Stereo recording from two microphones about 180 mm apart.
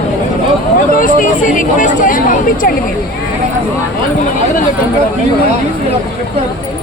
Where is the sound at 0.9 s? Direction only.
50° left (ahead or behind).